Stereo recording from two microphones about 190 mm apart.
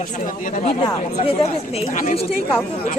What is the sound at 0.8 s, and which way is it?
Speech, 30° left (ahead or behind).